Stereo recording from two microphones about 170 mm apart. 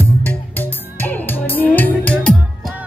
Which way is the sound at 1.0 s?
10° left (ahead or behind).